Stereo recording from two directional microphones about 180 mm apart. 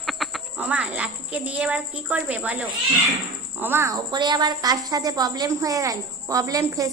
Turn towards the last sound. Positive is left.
turn(degrees=-20)  # may be behind; listen again after turning